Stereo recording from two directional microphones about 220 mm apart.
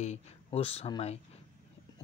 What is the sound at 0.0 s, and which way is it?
Speech, 30° left (ahead or behind).